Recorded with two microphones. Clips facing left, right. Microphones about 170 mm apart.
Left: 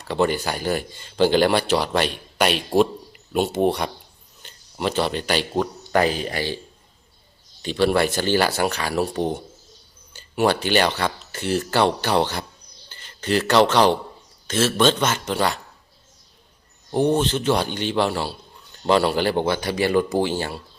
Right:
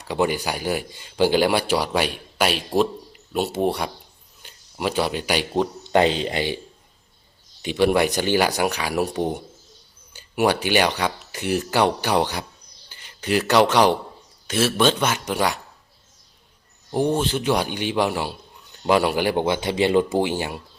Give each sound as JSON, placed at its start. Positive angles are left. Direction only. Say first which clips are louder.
{"t": 0.0, "sound": "speech", "louder": "left 1 dB", "side_deg": -10}
{"t": 5.5, "sound": "speech", "louder": "right 3 dB", "side_deg": -25}
{"t": 7.6, "sound": "speech", "louder": "right 1 dB", "side_deg": -15}
{"t": 16.9, "sound": "speech", "louder": "left 2 dB", "side_deg": -5}